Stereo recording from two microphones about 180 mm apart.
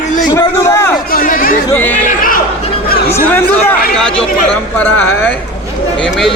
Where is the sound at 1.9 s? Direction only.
50° left (ahead or behind).